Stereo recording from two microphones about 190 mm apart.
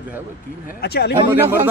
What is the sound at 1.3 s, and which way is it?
Speech, 10° right (ahead or behind).